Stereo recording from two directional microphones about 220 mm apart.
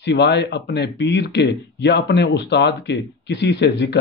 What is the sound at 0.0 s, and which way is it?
Speech, 50° left (ahead or behind).